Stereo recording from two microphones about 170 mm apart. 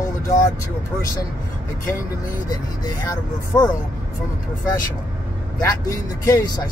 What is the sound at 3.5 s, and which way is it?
Speech, 15° left (ahead or behind).